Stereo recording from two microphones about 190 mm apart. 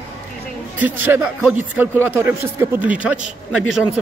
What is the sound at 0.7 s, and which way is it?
A man's voice, 10° right (ahead or behind).